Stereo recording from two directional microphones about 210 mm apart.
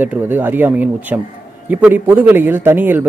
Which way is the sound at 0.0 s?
10° right (ahead or behind).